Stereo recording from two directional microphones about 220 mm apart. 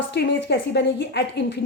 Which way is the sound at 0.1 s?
50° left (ahead or behind).